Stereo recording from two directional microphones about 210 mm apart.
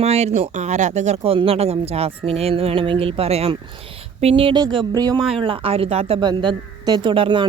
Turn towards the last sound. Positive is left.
turn(degrees=-25)  # may be behind; listen again after turning